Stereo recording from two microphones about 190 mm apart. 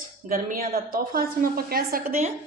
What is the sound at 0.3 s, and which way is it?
A woman's voice, 50° right (ahead or behind).